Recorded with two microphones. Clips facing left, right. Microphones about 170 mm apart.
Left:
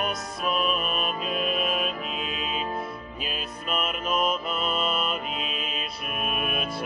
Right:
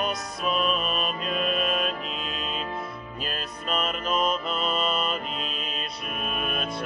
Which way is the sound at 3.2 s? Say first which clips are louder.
Right 2 dB; 5° left (ahead or behind).